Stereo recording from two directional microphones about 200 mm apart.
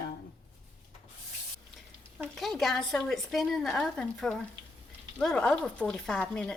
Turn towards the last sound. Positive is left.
turn(degrees=5)  # may be behind; listen again after turning